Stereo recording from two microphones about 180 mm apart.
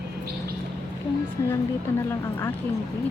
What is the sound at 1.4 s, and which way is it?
Speech, 15° left (ahead or behind).